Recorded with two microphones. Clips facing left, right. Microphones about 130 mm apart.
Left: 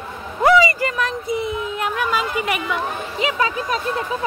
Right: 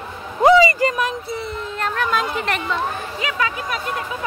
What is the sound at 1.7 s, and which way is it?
Speech, 10° left (ahead or behind).